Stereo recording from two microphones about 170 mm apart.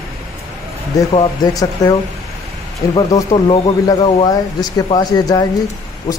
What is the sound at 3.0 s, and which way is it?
Speech, 25° left (ahead or behind).